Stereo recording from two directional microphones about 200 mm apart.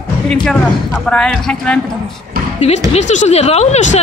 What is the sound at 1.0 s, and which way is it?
Speech, 5° left (ahead or behind).